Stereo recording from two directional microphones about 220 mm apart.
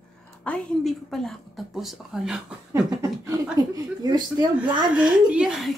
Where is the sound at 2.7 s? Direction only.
15° right (ahead or behind).